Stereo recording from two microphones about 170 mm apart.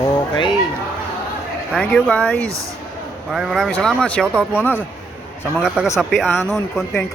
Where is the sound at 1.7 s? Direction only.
5° left (ahead or behind).